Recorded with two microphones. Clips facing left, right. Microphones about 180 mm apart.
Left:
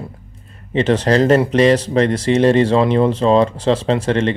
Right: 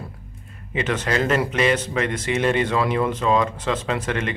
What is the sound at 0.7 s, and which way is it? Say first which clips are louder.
Speech: left 9 dB; 30° left (ahead or behind).